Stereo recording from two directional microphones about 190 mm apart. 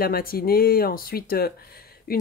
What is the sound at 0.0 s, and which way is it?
Speech, 50° left (ahead or behind).